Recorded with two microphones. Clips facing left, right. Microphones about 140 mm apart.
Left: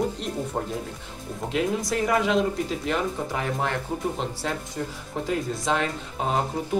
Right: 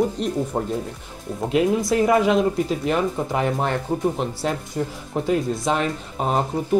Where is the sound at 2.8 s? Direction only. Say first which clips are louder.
Right 5 dB; 20° right (ahead or behind).